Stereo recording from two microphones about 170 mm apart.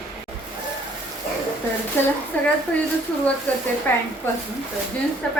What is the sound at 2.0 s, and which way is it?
Speech, 15° left (ahead or behind).